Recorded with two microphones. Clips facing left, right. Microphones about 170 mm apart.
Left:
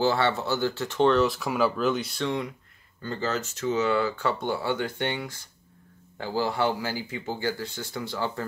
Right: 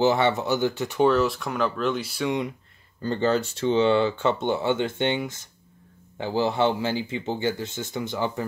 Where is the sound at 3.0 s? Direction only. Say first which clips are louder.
Right 6 dB; 30° right (ahead or behind).